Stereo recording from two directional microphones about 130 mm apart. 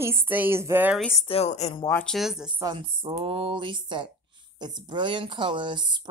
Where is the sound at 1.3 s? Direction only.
55° left (ahead or behind).